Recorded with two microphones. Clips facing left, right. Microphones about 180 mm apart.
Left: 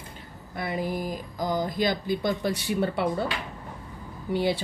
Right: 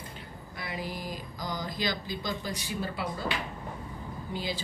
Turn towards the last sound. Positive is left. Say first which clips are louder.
# left 9 dB
turn(degrees=65)  # may be behind; listen again after turning